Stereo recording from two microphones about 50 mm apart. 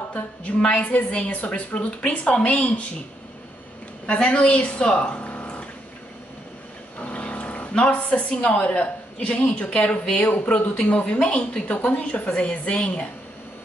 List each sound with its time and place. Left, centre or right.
0.1 s speech: left
4.0 s speech: left
7.0 s speech: left